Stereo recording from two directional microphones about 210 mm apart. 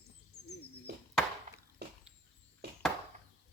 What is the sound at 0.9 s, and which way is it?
Chop, 55° right (ahead or behind).